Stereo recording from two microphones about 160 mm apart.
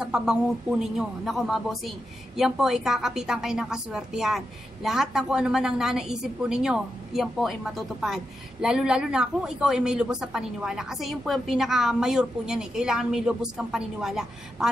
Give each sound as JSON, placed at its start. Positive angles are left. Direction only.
{"t": 0.0, "sound": "a woman's voice", "side_deg": -5}